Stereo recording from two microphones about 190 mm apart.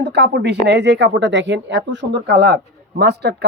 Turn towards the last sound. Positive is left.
turn(degrees=-60)  # may be behind; listen again after turning